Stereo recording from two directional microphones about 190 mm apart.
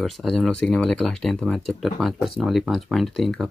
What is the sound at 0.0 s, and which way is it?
Speech, centre (ahead or behind).